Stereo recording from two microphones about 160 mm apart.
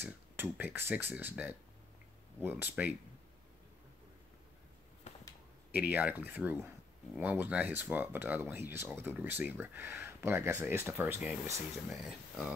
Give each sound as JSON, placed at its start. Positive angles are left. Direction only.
{"t": 0.0, "sound": "speech", "side_deg": -10}
{"t": 5.1, "sound": "a sound", "side_deg": 45}
{"t": 5.7, "sound": "speech", "side_deg": -10}